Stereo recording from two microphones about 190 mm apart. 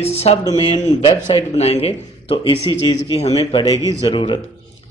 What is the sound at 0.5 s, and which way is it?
Speech, 25° left (ahead or behind).